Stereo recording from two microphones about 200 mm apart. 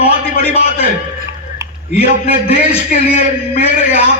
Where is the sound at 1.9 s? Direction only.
30° left (ahead or behind).